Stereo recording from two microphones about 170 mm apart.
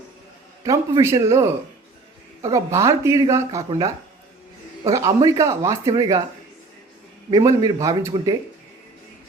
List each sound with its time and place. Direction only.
0.6 s a man's voice: 20° right (ahead or behind)
7.3 s speech: 25° right (ahead or behind)